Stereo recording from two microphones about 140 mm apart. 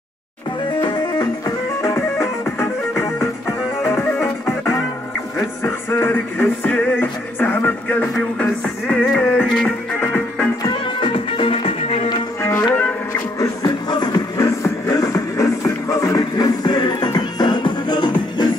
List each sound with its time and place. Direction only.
1.8 s music: 20° left (ahead or behind)
3.8 s music: 15° left (ahead or behind)
10.6 s music: 35° left (ahead or behind)
12.4 s music: 20° left (ahead or behind)